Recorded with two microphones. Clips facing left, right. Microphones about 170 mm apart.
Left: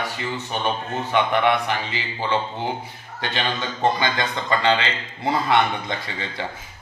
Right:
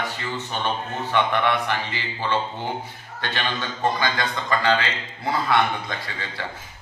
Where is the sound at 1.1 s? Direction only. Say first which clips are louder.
Left 2 dB; 15° left (ahead or behind).